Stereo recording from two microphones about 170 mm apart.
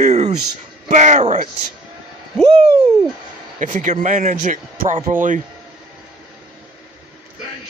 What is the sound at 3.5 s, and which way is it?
A man's voice, 50° right (ahead or behind).